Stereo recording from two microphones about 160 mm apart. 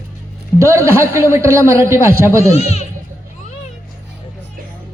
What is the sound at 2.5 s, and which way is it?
Speech, 40° left (ahead or behind).